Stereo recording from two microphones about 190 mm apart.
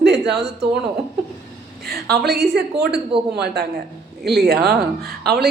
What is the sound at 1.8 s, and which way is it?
Speech, 55° right (ahead or behind).